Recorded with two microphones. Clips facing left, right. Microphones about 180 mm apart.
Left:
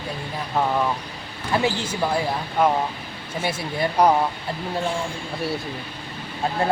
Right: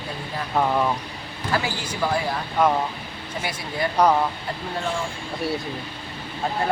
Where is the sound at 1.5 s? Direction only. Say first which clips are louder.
Left 4 dB; 25° left (ahead or behind).